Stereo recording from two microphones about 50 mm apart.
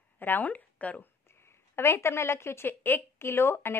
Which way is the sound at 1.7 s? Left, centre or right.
Left.